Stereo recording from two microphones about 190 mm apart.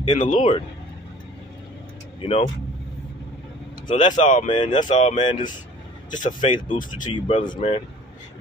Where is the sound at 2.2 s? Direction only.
30° left (ahead or behind).